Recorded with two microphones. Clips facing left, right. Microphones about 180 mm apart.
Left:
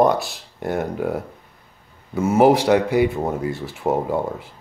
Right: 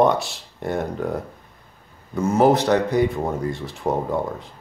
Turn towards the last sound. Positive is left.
turn(degrees=5)  # may be behind; listen again after turning